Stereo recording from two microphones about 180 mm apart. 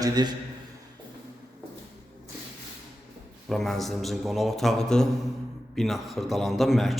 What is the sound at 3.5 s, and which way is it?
A man's voice, centre (ahead or behind).